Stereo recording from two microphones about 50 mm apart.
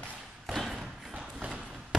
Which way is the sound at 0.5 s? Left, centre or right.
Centre.